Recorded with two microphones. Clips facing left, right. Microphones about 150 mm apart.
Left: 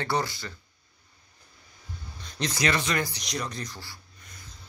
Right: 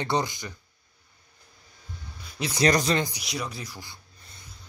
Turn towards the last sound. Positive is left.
turn(degrees=-5)  # may be behind; listen again after turning